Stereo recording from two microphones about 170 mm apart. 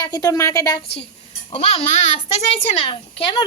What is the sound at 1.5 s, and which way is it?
A woman's voice, 35° left (ahead or behind).